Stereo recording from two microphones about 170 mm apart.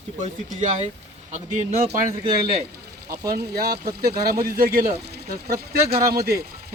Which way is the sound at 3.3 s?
65° right (ahead or behind).